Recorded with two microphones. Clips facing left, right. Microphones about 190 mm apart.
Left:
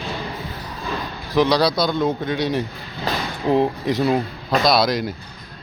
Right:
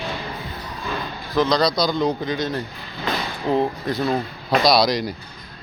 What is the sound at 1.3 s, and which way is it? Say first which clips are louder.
A man's voice: left 2 dB; 10° left (ahead or behind).